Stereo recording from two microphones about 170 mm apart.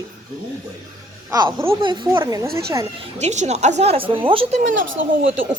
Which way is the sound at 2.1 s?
15° right (ahead or behind).